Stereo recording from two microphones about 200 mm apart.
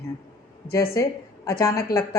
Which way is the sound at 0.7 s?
15° left (ahead or behind).